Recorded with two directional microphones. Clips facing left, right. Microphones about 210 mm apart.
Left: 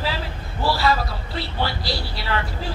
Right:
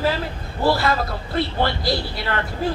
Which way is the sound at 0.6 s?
50° right (ahead or behind).